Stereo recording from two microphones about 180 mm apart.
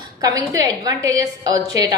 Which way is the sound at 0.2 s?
20° right (ahead or behind).